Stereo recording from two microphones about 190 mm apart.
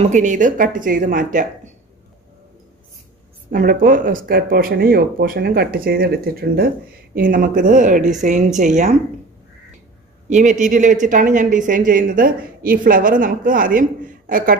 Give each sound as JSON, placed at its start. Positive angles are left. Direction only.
{"t": 0.0, "sound": "speech", "side_deg": -40}
{"t": 3.4, "sound": "speech", "side_deg": -45}
{"t": 10.3, "sound": "speech", "side_deg": -40}